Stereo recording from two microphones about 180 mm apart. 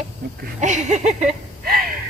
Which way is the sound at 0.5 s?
40° right (ahead or behind).